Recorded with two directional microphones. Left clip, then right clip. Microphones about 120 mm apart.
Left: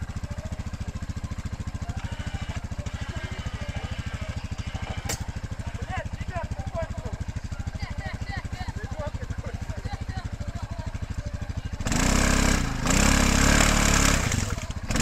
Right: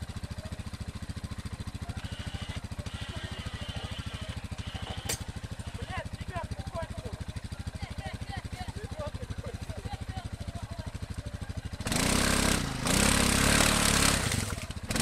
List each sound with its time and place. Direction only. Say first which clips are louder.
5.9 s vehicle: left 5 dB; 25° right (ahead or behind)
11.8 s vehicle: left 3 dB; 20° right (ahead or behind)